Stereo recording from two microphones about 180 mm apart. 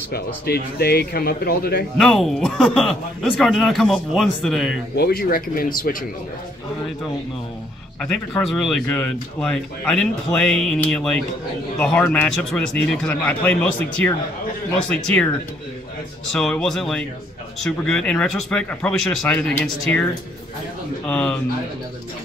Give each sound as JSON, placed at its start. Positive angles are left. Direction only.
{"t": 0.1, "sound": "speech", "side_deg": 60}
{"t": 2.0, "sound": "speech", "side_deg": 0}
{"t": 4.9, "sound": "speech", "side_deg": 60}
{"t": 8.5, "sound": "a man's voice", "side_deg": 0}
{"t": 16.3, "sound": "a man's voice", "side_deg": 5}